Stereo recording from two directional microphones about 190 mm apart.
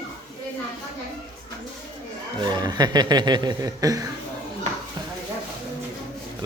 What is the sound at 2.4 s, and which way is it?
Speech, 20° right (ahead or behind).